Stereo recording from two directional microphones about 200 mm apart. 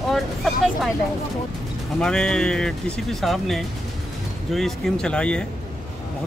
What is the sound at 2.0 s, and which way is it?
Speech, 5° left (ahead or behind).